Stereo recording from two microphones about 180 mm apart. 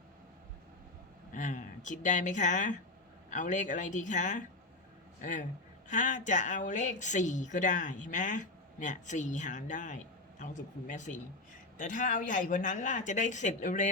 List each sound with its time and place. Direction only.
1.3 s speech: 45° left (ahead or behind)